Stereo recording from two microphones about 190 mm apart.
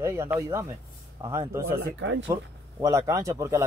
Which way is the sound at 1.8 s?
85° right.